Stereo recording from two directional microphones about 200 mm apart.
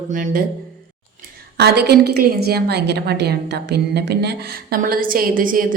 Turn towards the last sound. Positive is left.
turn(degrees=-45)  # may be behind; listen again after turning